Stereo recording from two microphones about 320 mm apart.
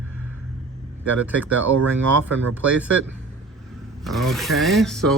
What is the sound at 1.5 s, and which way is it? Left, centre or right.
Speech, right.